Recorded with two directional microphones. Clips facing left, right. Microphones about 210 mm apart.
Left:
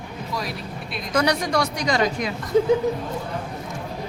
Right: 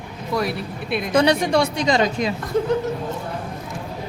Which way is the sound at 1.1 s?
25° right (ahead or behind).